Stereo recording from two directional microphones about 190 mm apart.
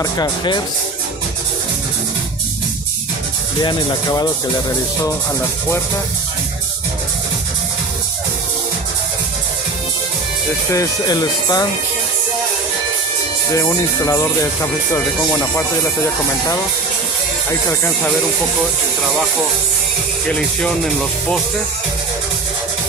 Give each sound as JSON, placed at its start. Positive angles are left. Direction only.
{"t": 0.0, "sound": "speech", "side_deg": 20}
{"t": 3.6, "sound": "speech", "side_deg": 20}
{"t": 10.7, "sound": "speech", "side_deg": 20}
{"t": 13.6, "sound": "speech", "side_deg": 15}
{"t": 20.2, "sound": "speech", "side_deg": 5}